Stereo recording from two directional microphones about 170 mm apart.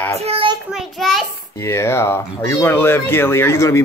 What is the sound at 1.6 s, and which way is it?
Speech, 15° left (ahead or behind).